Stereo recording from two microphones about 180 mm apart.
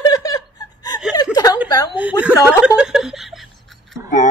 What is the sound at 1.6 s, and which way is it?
Speech, 25° left (ahead or behind).